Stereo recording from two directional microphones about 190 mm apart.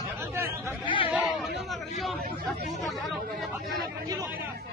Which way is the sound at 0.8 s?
25° left (ahead or behind).